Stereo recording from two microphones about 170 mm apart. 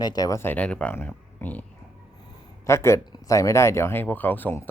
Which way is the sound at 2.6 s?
15° left (ahead or behind).